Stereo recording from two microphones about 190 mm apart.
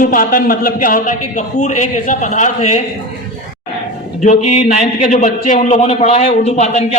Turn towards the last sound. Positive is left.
turn(degrees=35)  # may be behind; listen again after turning